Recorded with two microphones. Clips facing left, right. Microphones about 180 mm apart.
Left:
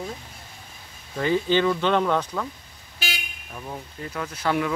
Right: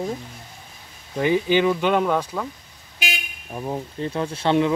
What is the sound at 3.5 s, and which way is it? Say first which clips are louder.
Speech: right 8 dB; 30° right (ahead or behind).